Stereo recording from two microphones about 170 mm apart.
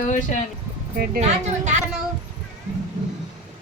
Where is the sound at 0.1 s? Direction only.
50° left (ahead or behind).